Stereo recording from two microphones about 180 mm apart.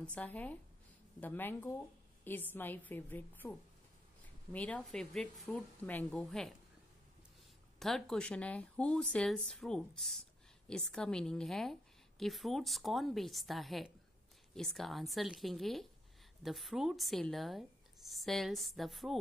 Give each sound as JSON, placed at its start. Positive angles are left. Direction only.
{"t": 0.0, "sound": "speech", "side_deg": 5}
{"t": 7.8, "sound": "a woman's voice", "side_deg": 0}